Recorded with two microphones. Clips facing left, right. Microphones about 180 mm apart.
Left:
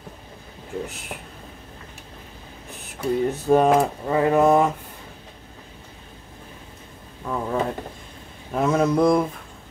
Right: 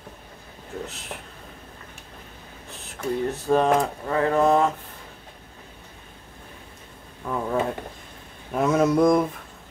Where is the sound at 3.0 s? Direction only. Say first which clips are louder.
Left 3 dB; 15° left (ahead or behind).